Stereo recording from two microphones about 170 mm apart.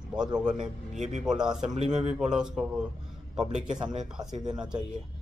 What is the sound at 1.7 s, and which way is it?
Speech, 40° right (ahead or behind).